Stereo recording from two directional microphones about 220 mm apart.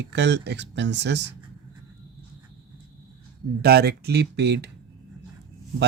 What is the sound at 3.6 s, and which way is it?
Speech, 45° right (ahead or behind).